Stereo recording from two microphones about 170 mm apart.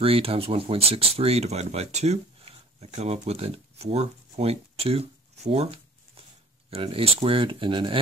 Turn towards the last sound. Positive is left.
turn(degrees=-30)  # may be behind; listen again after turning